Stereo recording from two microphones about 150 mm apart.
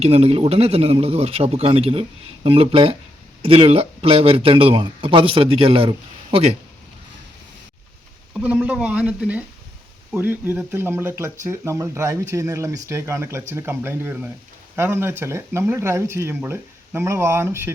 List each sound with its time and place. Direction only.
0.0 s a man's voice: 40° right (ahead or behind)
8.3 s speech: 10° right (ahead or behind)